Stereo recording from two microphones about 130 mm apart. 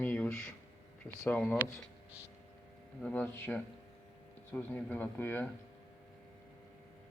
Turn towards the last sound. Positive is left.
turn(degrees=15)  # may be behind; listen again after turning